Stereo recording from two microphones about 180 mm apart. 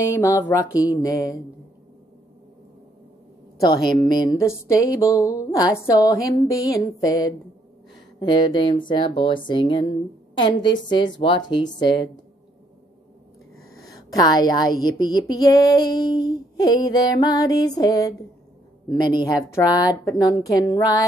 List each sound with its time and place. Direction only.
0.0 s music: 15° left (ahead or behind)
3.6 s speech: 20° left (ahead or behind)
14.1 s speech: 20° left (ahead or behind)